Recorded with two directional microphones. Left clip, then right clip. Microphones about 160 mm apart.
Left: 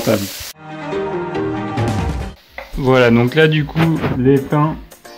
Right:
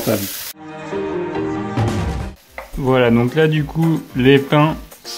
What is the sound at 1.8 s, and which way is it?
Music, centre (ahead or behind).